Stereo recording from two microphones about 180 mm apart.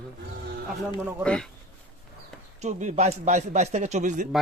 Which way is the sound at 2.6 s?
40° right (ahead or behind).